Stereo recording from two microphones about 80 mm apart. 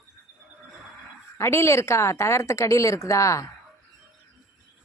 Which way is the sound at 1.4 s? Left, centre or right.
Left.